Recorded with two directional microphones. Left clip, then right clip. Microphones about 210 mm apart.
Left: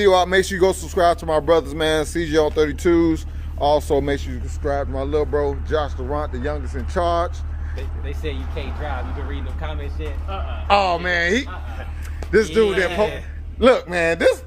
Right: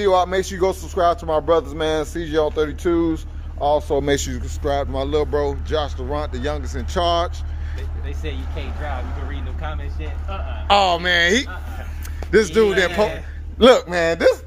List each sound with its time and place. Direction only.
0.0 s speech: 20° left (ahead or behind)
4.1 s speech: 55° right (ahead or behind)
4.6 s speech: 15° right (ahead or behind)
8.1 s speech: 20° left (ahead or behind)
10.3 s a man's voice: 20° right (ahead or behind)
13.8 s speech: 10° right (ahead or behind)